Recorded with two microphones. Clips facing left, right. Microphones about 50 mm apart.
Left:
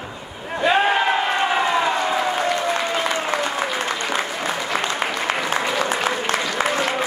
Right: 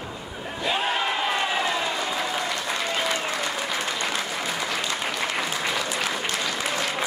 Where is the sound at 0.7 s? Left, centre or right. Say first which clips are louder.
Left 7 dB; left.